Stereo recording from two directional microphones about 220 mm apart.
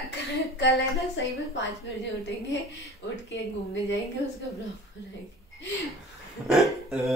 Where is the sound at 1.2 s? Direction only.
55° left (ahead or behind).